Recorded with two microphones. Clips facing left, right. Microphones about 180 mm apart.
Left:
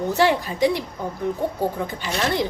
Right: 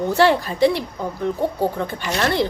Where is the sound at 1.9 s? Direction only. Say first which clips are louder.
Right 2 dB; 15° left (ahead or behind).